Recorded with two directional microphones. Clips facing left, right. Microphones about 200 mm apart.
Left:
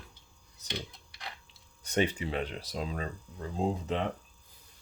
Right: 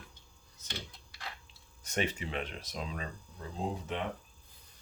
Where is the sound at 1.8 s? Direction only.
30° left (ahead or behind).